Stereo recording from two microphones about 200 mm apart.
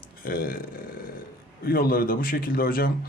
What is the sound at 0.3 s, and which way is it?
Speech, 45° left (ahead or behind).